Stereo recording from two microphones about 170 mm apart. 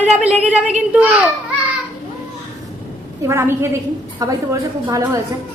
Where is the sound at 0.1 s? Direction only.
5° right (ahead or behind).